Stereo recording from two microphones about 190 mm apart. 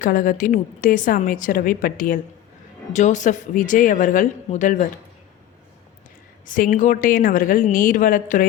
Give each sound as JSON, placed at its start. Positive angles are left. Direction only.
{"t": 0.0, "sound": "a woman's voice", "side_deg": 45}
{"t": 6.4, "sound": "a woman's voice", "side_deg": 45}